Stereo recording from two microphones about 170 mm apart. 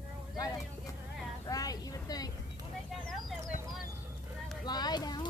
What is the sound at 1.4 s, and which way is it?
Vehicle, 20° left (ahead or behind).